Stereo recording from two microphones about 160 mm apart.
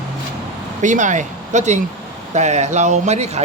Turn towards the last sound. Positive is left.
turn(degrees=-45)  # may be behind; listen again after turning